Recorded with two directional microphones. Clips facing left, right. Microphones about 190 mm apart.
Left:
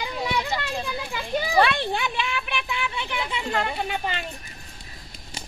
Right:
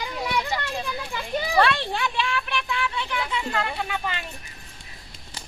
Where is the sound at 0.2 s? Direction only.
15° left (ahead or behind).